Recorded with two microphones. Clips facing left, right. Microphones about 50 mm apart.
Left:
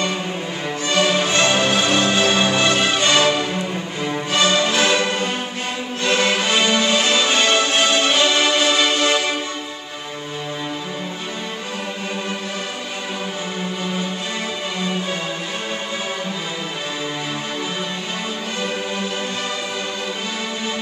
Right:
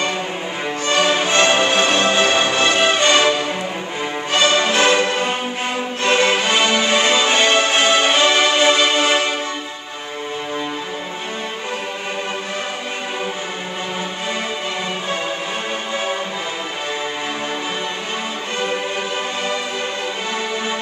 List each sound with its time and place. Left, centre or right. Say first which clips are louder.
0.8 s music: right 1 dB; centre
1.1 s music: right 2 dB; right
4.4 s music: right 2 dB; right